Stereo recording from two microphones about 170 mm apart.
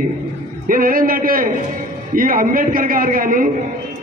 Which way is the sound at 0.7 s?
55° right (ahead or behind).